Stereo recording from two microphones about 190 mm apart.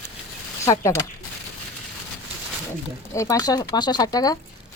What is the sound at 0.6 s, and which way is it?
Speech, 15° left (ahead or behind).